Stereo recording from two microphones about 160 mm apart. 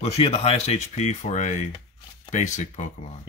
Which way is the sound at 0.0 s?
40° left (ahead or behind).